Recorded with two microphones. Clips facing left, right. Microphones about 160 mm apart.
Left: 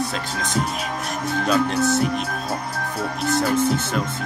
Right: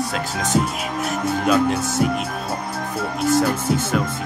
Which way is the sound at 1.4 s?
10° right (ahead or behind).